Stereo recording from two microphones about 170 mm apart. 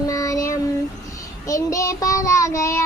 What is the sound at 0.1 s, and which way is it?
Child singing, 20° left (ahead or behind).